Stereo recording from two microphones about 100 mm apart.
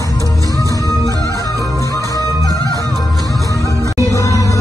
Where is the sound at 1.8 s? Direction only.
35° left (ahead or behind).